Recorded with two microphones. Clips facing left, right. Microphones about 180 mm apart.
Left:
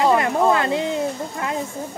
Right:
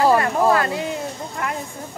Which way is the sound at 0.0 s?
20° left (ahead or behind).